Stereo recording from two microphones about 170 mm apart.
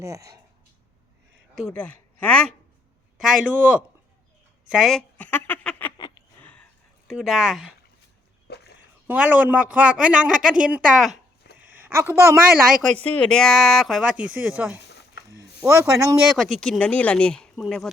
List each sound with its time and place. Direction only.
0.0 s speech: 20° right (ahead or behind)
1.6 s a woman's voice: 5° left (ahead or behind)
3.2 s speech: 5° right (ahead or behind); by 5.9 s 10° left (ahead or behind)
6.4 s a sound: 10° left (ahead or behind)
7.1 s speech: centre (ahead or behind)
8.4 s a sound: 75° left (ahead or behind)
9.0 s speech: 10° right (ahead or behind)
11.5 s a sound: 10° right (ahead or behind)
13.0 s speech: 5° left (ahead or behind); by 16.1 s 15° right (ahead or behind)
16.2 s speech: centre (ahead or behind)